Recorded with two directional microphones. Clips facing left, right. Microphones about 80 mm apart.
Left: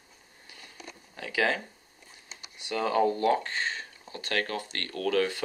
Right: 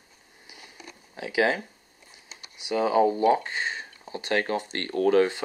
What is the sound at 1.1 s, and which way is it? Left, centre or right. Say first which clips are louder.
Speech: right 4 dB; centre.